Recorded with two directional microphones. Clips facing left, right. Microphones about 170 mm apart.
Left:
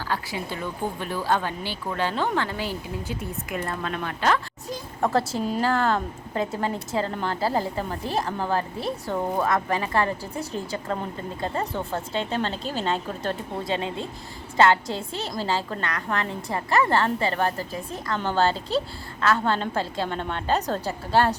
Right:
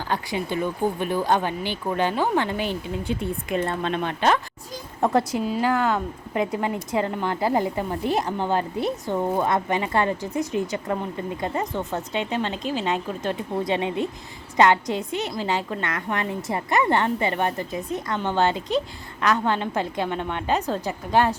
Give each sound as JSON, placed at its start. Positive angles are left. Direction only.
{"t": 0.1, "sound": "a woman's voice", "side_deg": -20}
{"t": 14.8, "sound": "a woman's voice", "side_deg": 30}
{"t": 15.4, "sound": "a woman's voice", "side_deg": -20}